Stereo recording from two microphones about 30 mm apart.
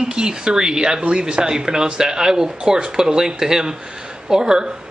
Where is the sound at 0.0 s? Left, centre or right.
Right.